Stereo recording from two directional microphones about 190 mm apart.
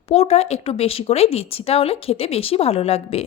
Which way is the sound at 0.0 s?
35° left (ahead or behind).